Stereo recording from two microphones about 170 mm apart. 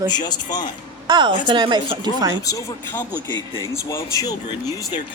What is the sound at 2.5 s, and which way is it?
Speech, 20° left (ahead or behind).